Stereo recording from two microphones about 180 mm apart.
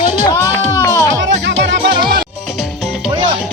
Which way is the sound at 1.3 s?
90° right.